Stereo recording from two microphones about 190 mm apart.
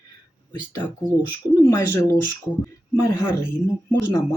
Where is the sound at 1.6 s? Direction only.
15° left (ahead or behind).